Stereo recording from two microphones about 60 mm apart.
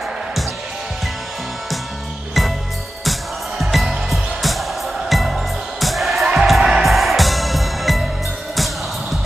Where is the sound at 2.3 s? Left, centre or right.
Centre.